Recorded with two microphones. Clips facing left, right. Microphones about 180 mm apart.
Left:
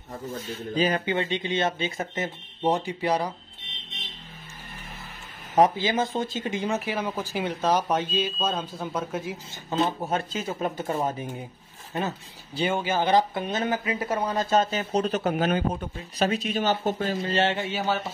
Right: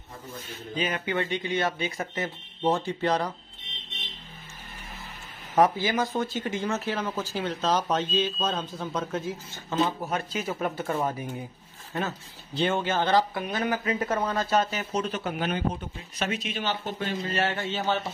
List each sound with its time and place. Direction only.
0.7 s speech: 35° left (ahead or behind)
1.0 s speech: 20° left (ahead or behind)
5.6 s speech: 20° left (ahead or behind)
12.5 s speech: 10° left (ahead or behind); by 17.2 s 40° left (ahead or behind)
17.2 s speech: 30° left (ahead or behind)
17.6 s speech: 10° left (ahead or behind)